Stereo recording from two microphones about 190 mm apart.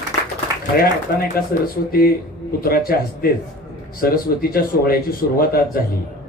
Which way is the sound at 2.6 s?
50° left (ahead or behind).